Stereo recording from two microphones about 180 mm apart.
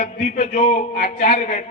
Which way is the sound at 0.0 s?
40° left (ahead or behind).